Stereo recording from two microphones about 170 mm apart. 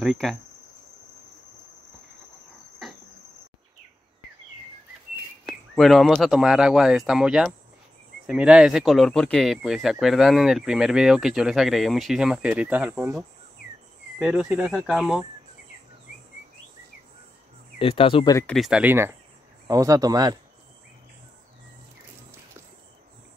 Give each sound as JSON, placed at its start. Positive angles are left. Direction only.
{"t": 0.0, "sound": "speech", "side_deg": 0}
{"t": 2.8, "sound": "cricket", "side_deg": 0}
{"t": 5.5, "sound": "speech", "side_deg": 0}
{"t": 14.2, "sound": "speech", "side_deg": -5}
{"t": 17.7, "sound": "speech", "side_deg": 30}
{"t": 18.5, "sound": "speech", "side_deg": -5}